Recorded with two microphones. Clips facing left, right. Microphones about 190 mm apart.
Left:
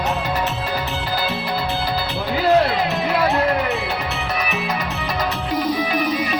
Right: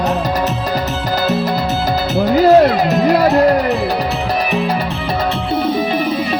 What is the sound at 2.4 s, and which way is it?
Music, 40° right (ahead or behind).